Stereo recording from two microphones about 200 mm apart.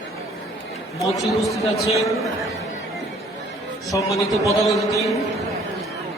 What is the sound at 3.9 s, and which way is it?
Speech, 15° left (ahead or behind).